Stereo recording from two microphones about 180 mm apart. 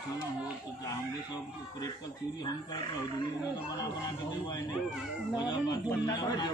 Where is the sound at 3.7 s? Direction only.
20° left (ahead or behind).